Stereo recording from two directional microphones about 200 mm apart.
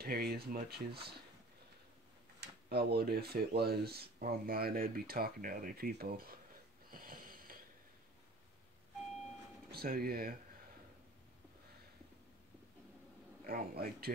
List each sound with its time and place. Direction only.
0.0 s speech: 50° right (ahead or behind)
2.4 s speech: 55° right (ahead or behind)
6.9 s wheeze: 45° right (ahead or behind)
9.7 s speech: 50° right (ahead or behind)
13.4 s a man's voice: 50° right (ahead or behind)